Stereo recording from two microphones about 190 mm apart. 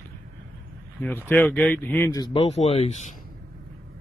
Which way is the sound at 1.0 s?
10° left (ahead or behind).